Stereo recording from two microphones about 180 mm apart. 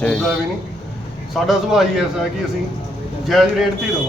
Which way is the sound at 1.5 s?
Centre (ahead or behind).